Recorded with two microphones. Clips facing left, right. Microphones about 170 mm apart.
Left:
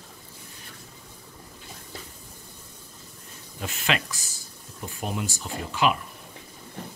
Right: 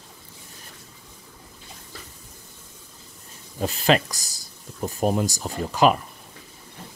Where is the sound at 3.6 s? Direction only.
35° right (ahead or behind).